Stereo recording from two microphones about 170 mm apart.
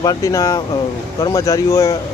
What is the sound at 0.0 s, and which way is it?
Speech, 20° left (ahead or behind).